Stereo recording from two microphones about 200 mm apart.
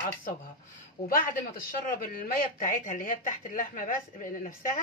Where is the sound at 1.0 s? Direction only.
50° left (ahead or behind).